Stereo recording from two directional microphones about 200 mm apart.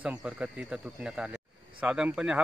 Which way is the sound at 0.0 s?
5° right (ahead or behind).